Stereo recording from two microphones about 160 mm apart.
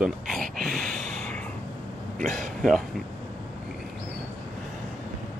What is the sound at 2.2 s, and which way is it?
Speech, 55° right (ahead or behind).